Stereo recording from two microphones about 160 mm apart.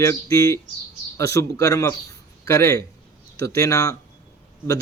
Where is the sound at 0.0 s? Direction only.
20° left (ahead or behind).